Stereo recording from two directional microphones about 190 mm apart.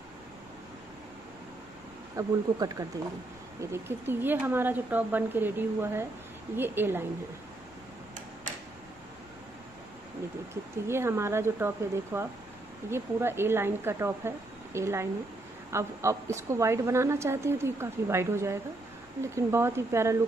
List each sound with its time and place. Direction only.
2.1 s a woman's voice: 20° right (ahead or behind)
10.5 s a woman's voice: 15° right (ahead or behind)